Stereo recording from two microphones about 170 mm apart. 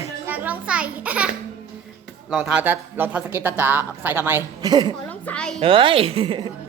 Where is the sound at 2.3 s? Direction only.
5° right (ahead or behind).